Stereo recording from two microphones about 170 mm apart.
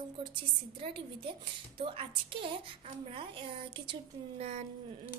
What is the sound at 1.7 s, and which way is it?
Speech, 30° right (ahead or behind).